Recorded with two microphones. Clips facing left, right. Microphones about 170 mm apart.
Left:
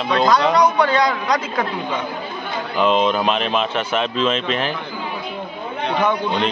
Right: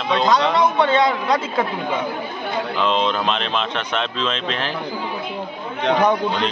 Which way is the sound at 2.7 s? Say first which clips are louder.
Left 5 dB; 5° left (ahead or behind).